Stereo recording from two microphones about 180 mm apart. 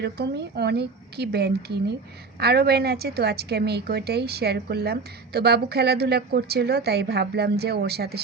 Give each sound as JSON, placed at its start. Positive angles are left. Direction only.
{"t": 0.0, "sound": "a woman's voice", "side_deg": -65}